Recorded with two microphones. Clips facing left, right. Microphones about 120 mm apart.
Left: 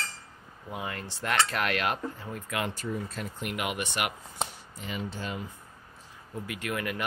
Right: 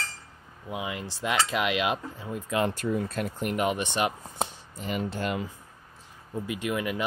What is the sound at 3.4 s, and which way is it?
Speech, 35° right (ahead or behind).